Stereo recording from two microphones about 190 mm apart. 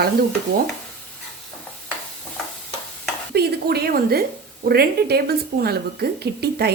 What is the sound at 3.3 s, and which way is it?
A woman's voice, 55° right (ahead or behind).